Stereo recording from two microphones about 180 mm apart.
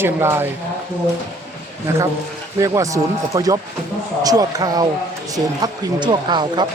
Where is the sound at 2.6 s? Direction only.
15° right (ahead or behind).